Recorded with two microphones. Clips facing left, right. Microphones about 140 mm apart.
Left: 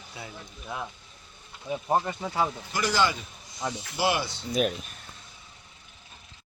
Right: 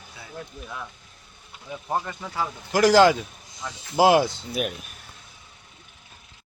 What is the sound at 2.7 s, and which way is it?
Speech, 90° right.